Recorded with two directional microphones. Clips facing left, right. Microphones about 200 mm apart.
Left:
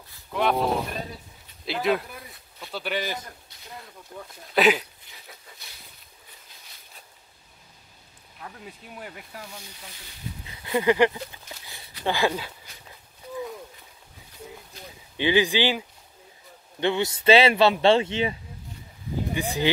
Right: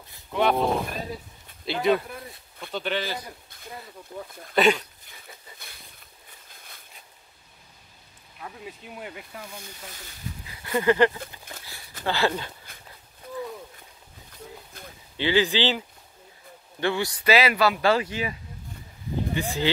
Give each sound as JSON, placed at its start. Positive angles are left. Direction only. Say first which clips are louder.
{"t": 0.3, "sound": "speech", "louder": "right 1 dB", "side_deg": 0}
{"t": 1.7, "sound": "speech", "louder": "right 2 dB", "side_deg": 0}
{"t": 3.4, "sound": "a sound", "louder": "right 4 dB", "side_deg": -50}
{"t": 3.8, "sound": "speech", "louder": "right 3 dB", "side_deg": 0}
{"t": 9.0, "sound": "speech", "louder": "right 2 dB", "side_deg": 0}
{"t": 10.6, "sound": "speech", "louder": "even", "side_deg": 15}
{"t": 11.5, "sound": "a sound", "louder": "even", "side_deg": -55}
{"t": 12.0, "sound": "speech", "louder": "left 1 dB", "side_deg": 15}
{"t": 14.7, "sound": "a sound", "louder": "even", "side_deg": -55}
{"t": 15.1, "sound": "speech", "louder": "left 1 dB", "side_deg": 15}
{"t": 16.8, "sound": "speech", "louder": "left 3 dB", "side_deg": 20}
{"t": 19.3, "sound": "speech", "louder": "left 2 dB", "side_deg": 15}